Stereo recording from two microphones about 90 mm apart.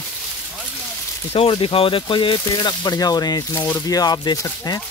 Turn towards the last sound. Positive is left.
turn(degrees=45)  # may be behind; listen again after turning